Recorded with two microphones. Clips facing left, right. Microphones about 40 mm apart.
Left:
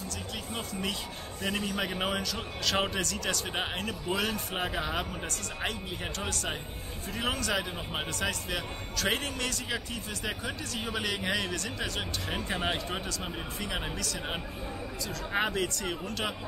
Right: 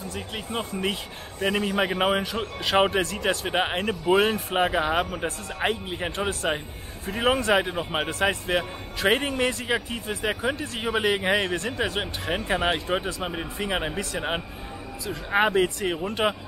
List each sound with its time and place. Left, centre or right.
0.5 s speech: right